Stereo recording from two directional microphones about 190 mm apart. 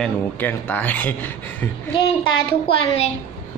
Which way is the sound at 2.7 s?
30° left (ahead or behind).